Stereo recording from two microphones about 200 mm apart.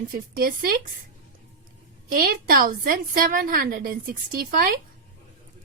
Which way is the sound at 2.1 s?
45° right (ahead or behind).